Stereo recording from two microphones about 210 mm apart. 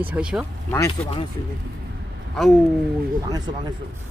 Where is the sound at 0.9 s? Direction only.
25° left (ahead or behind).